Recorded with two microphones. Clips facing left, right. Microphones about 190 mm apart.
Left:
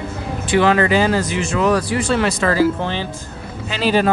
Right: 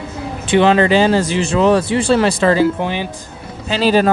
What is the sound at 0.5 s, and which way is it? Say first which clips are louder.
Speech: right 3 dB; 25° right (ahead or behind).